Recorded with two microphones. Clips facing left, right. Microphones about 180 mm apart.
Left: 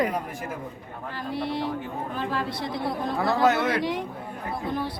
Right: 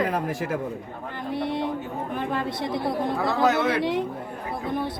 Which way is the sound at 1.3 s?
20° right (ahead or behind).